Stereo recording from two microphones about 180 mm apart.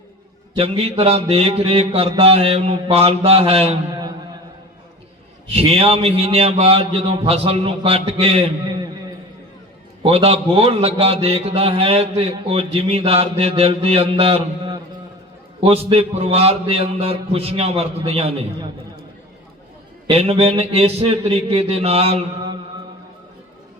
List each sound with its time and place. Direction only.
0.5 s a man's voice: 35° right (ahead or behind)
5.5 s a man's voice: 35° right (ahead or behind)
10.0 s a man's voice: 30° right (ahead or behind)
20.1 s a man's voice: 30° right (ahead or behind)